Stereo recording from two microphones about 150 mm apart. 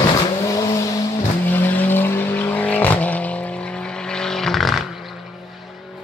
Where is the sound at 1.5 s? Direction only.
15° left (ahead or behind).